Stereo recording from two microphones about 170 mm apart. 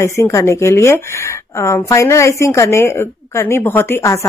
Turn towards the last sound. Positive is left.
turn(degrees=15)  # may be behind; listen again after turning